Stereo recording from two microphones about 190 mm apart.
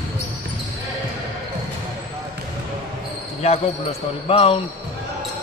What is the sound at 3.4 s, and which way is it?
Speech, 35° left (ahead or behind).